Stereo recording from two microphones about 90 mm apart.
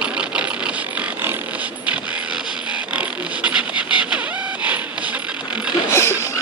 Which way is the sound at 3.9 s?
15° right (ahead or behind).